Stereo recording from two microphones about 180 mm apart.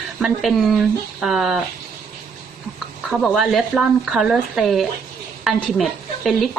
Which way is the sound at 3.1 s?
Centre (ahead or behind).